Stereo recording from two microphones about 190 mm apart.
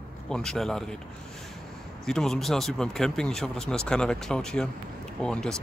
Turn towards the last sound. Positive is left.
turn(degrees=5)  # may be behind; listen again after turning